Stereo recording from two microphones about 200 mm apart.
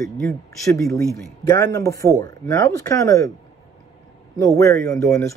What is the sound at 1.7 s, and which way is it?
Speech, 15° left (ahead or behind).